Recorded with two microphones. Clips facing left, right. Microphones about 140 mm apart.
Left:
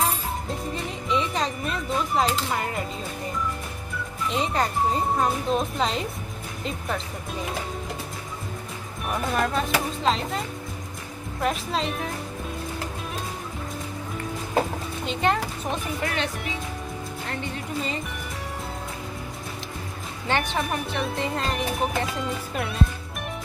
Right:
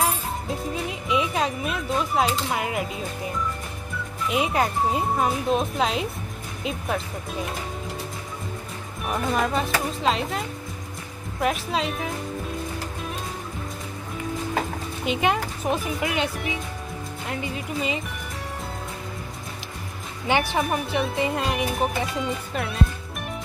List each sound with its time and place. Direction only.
0.5 s speech: 5° right (ahead or behind)
4.3 s speech: 10° right (ahead or behind)
9.0 s speech: centre (ahead or behind)
11.4 s speech: 5° right (ahead or behind)
15.0 s speech: 10° right (ahead or behind)
17.3 s speech: 10° right (ahead or behind)
20.2 s speech: 10° right (ahead or behind)